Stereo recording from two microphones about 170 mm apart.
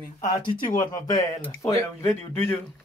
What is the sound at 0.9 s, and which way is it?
A man's voice, 20° left (ahead or behind).